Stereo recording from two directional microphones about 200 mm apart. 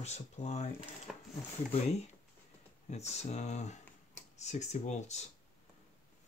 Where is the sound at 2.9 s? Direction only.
35° left (ahead or behind).